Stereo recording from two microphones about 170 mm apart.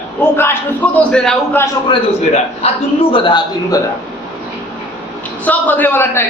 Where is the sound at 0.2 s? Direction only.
15° left (ahead or behind).